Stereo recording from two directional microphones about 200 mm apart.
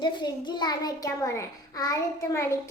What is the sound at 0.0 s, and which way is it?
A child's voice, 20° left (ahead or behind).